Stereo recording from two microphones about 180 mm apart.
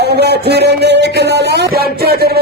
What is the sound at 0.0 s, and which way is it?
A man's voice, 65° right (ahead or behind).